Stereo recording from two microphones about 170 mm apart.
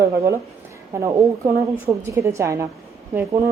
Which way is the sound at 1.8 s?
15° right (ahead or behind).